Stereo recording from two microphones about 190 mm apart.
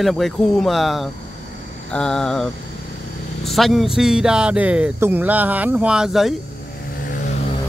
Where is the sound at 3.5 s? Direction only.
Centre (ahead or behind).